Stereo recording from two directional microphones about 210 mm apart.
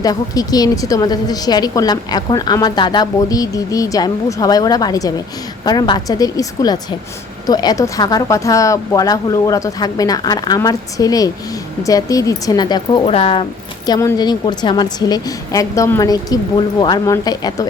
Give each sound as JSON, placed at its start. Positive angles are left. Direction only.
{"t": 0.0, "sound": "a woman's voice", "side_deg": 15}